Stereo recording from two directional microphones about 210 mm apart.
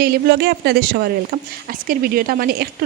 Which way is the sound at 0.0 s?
50° right (ahead or behind).